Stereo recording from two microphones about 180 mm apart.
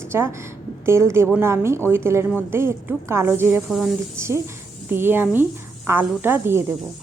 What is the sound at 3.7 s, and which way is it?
Speech, centre (ahead or behind).